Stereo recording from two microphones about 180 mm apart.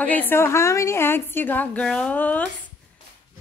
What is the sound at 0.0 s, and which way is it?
A woman's voice, 10° left (ahead or behind).